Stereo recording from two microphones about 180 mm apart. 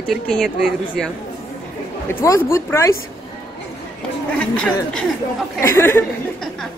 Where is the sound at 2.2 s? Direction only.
15° left (ahead or behind).